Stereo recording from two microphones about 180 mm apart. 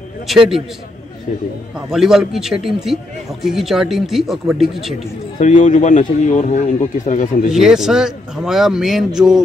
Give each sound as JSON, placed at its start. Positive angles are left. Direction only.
{"t": 0.3, "sound": "a man's voice", "side_deg": 0}
{"t": 1.9, "sound": "a man's voice", "side_deg": 0}
{"t": 5.4, "sound": "a man's voice", "side_deg": 40}
{"t": 7.5, "sound": "a man's voice", "side_deg": 0}